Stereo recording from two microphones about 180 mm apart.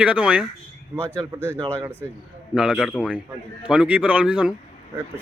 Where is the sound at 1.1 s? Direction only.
10° left (ahead or behind).